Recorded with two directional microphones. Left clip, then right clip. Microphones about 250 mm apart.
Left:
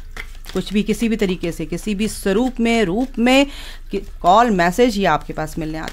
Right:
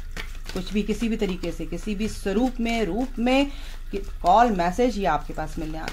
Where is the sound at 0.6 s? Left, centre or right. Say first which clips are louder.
Left 7 dB; left.